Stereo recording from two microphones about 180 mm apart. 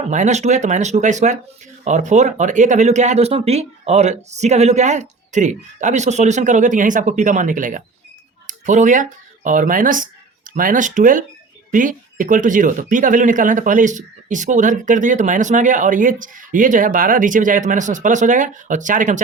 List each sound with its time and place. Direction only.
0.0 s speech: 40° right (ahead or behind)